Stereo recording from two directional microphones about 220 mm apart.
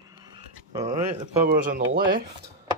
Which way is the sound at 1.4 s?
40° right (ahead or behind).